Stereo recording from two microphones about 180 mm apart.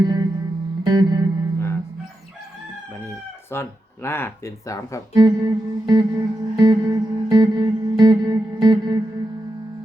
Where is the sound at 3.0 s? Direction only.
15° left (ahead or behind).